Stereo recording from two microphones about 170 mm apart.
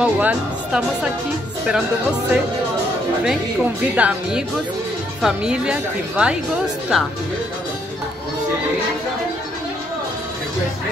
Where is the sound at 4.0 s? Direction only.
5° right (ahead or behind).